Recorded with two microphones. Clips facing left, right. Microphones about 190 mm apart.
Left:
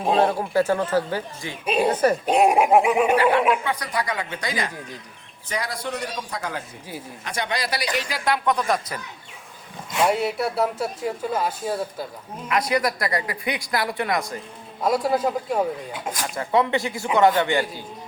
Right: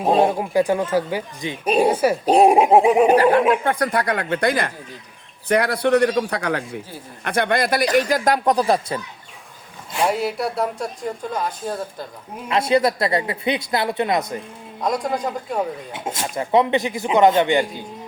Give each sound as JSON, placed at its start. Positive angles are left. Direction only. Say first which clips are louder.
{"t": 0.1, "sound": "speech", "louder": "right 3 dB", "side_deg": -15}
{"t": 1.6, "sound": "speech", "louder": "right 4 dB", "side_deg": -40}
{"t": 1.9, "sound": "speech", "louder": "right 1 dB", "side_deg": -10}
{"t": 2.2, "sound": "a man's voice", "louder": "right 8 dB", "side_deg": -35}
{"t": 7.3, "sound": "speech", "louder": "right 8 dB", "side_deg": -55}
{"t": 10.1, "sound": "speech", "louder": "even", "side_deg": 0}
{"t": 12.5, "sound": "speech", "louder": "right 5 dB", "side_deg": -25}
{"t": 14.8, "sound": "speech", "louder": "left 1 dB", "side_deg": 5}
{"t": 15.9, "sound": "speech", "louder": "right 2 dB", "side_deg": -25}